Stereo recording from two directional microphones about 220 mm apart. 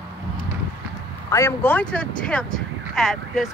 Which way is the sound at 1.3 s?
10° left (ahead or behind).